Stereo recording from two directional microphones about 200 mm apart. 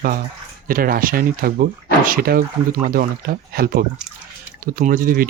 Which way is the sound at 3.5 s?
50° right (ahead or behind).